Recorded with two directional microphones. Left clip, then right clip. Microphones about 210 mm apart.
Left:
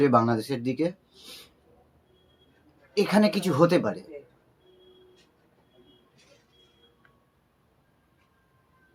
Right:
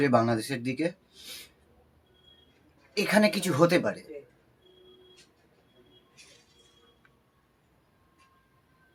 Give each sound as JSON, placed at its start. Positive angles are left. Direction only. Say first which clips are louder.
{"t": 0.0, "sound": "speech", "louder": "left 3 dB", "side_deg": -10}
{"t": 2.9, "sound": "speech", "louder": "left 1 dB", "side_deg": -10}
{"t": 4.1, "sound": "a sound", "louder": "even", "side_deg": -35}